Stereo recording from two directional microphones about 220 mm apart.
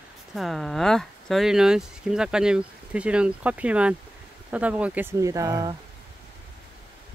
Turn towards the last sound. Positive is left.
turn(degrees=-15)  # may be behind; listen again after turning